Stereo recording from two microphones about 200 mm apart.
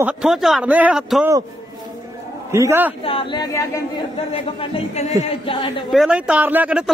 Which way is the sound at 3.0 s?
25° left (ahead or behind).